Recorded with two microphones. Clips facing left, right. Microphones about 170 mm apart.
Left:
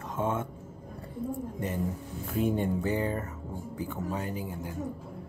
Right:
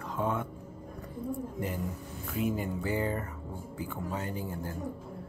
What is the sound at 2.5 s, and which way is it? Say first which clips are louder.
Speech: left 4 dB; 25° left (ahead or behind).